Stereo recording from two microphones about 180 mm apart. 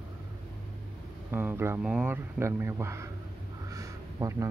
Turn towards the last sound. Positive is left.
turn(degrees=-15)  # may be behind; listen again after turning